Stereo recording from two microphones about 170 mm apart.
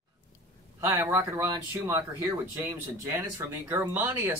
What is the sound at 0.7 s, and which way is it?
Speech, 15° right (ahead or behind).